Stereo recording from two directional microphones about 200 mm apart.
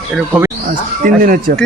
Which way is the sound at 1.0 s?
45° right (ahead or behind).